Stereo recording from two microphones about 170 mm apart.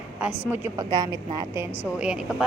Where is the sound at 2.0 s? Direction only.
5° right (ahead or behind).